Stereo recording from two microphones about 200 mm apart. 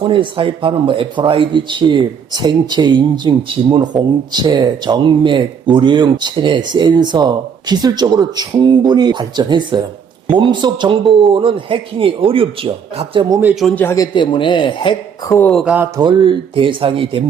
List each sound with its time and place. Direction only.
0.0 s speech: 25° right (ahead or behind)
13.4 s speech: centre (ahead or behind)
13.8 s a man's voice: 15° left (ahead or behind)
15.4 s speech: 5° left (ahead or behind)
15.6 s mantra: 10° right (ahead or behind)
16.0 s speech: 25° right (ahead or behind)